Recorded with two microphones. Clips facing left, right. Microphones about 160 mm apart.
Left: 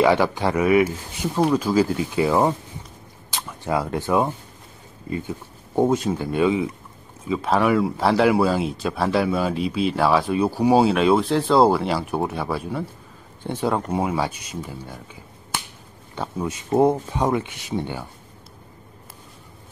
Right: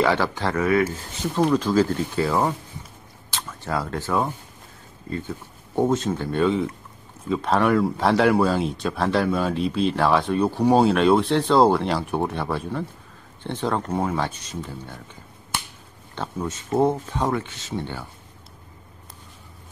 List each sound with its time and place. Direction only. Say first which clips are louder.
0.0 s speech: left 3 dB; 15° left (ahead or behind)
16.2 s speech: left 2 dB; 10° left (ahead or behind)